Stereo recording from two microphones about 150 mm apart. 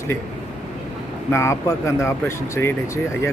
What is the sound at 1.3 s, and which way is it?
Speech, 20° left (ahead or behind).